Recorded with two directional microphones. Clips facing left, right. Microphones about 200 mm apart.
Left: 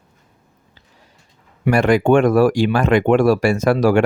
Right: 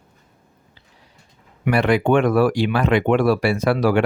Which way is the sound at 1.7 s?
45° left (ahead or behind).